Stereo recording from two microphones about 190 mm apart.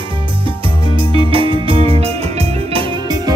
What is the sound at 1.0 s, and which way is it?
Music, 30° right (ahead or behind).